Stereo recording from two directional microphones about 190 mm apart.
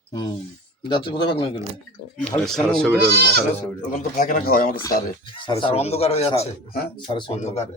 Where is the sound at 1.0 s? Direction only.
25° left (ahead or behind).